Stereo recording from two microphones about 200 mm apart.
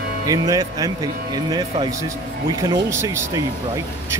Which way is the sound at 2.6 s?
15° right (ahead or behind).